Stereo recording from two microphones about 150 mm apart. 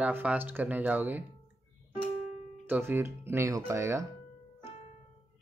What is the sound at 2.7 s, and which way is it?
Speech, 15° right (ahead or behind).